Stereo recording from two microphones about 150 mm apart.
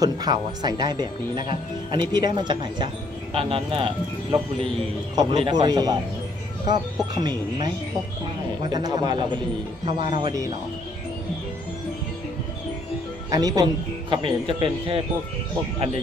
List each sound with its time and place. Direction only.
0.0 s speech: 25° right (ahead or behind)
7.2 s speech: 30° right (ahead or behind)
13.3 s speech: 25° right (ahead or behind)